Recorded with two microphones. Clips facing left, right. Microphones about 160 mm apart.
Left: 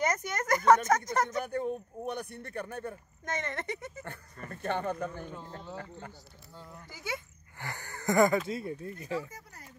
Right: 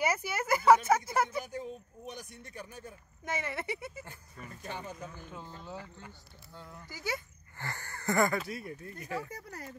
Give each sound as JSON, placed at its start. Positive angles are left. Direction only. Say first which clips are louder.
{"t": 0.0, "sound": "speech", "louder": "left 1 dB", "side_deg": -5}
{"t": 1.4, "sound": "speech", "louder": "left 7 dB", "side_deg": 60}
{"t": 3.3, "sound": "speech", "louder": "left 1 dB", "side_deg": -10}
{"t": 4.5, "sound": "speech", "louder": "left 10 dB", "side_deg": 60}
{"t": 6.5, "sound": "speech", "louder": "right 1 dB", "side_deg": 0}
{"t": 7.5, "sound": "speech", "louder": "left 1 dB", "side_deg": 15}
{"t": 9.3, "sound": "a sound", "louder": "right 6 dB", "side_deg": -75}